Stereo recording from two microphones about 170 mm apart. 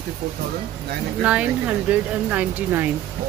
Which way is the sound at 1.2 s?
5° right (ahead or behind).